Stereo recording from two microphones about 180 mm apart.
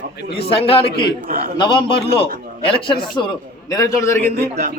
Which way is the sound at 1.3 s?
50° right (ahead or behind).